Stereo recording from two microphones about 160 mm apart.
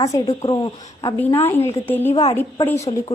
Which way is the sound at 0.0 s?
20° left (ahead or behind).